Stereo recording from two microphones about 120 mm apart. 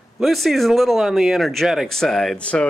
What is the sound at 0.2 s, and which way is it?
Speech, centre (ahead or behind).